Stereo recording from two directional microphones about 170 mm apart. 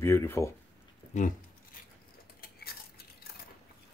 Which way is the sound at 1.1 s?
50° left (ahead or behind).